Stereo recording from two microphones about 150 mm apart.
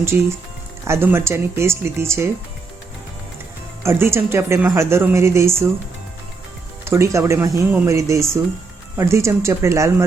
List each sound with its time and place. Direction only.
0.0 s speech: 15° right (ahead or behind)
3.8 s speech: 15° right (ahead or behind)
6.8 s speech: 20° right (ahead or behind)